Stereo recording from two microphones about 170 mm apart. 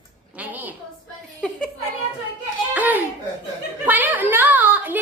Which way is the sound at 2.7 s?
10° right (ahead or behind).